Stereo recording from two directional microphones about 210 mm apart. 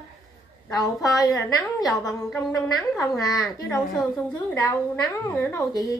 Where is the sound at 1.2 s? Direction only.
15° left (ahead or behind).